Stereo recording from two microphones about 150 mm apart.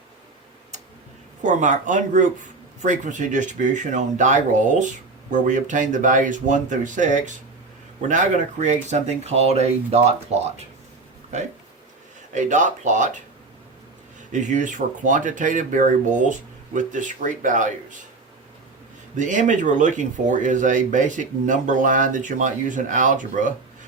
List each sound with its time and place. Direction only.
1.5 s speech: 55° right (ahead or behind)
12.3 s speech: 55° right (ahead or behind)
14.4 s speech: 55° right (ahead or behind)
19.1 s speech: 55° right (ahead or behind)